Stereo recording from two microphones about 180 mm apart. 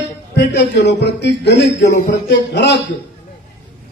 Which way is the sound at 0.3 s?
70° left (ahead or behind).